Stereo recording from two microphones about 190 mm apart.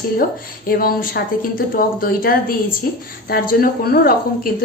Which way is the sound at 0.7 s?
50° left (ahead or behind).